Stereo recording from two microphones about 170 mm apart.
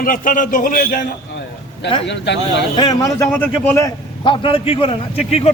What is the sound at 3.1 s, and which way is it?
Speech, 15° left (ahead or behind).